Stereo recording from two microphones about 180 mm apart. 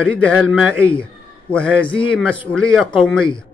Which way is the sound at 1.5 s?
5° left (ahead or behind).